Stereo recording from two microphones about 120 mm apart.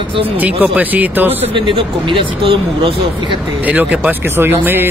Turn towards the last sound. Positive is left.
turn(degrees=-15)  # may be behind; listen again after turning